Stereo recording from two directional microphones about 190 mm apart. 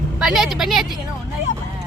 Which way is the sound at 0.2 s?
Centre (ahead or behind).